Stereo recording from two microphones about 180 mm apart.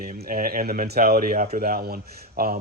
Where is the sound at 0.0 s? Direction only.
55° right (ahead or behind).